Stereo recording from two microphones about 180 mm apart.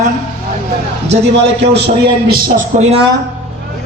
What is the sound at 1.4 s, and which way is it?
A man's voice, 70° right (ahead or behind).